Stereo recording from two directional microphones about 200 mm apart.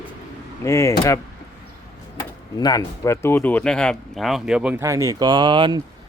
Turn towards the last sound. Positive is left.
turn(degrees=-25)  # may be behind; listen again after turning